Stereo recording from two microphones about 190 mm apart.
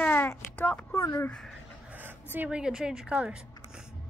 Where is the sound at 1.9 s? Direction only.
10° right (ahead or behind).